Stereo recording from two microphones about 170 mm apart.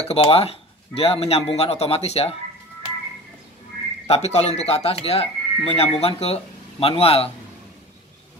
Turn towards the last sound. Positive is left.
turn(degrees=35)  # may be behind; listen again after turning